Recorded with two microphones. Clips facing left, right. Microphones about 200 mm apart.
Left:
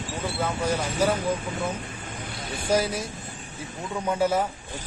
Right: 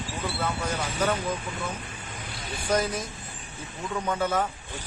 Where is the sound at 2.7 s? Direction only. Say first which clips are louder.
Left 2 dB; 10° left (ahead or behind).